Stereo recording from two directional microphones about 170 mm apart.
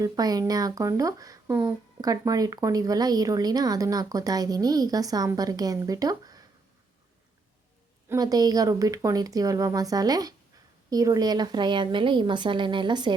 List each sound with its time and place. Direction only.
0.0 s speech: 20° right (ahead or behind)
8.1 s speech: 20° right (ahead or behind)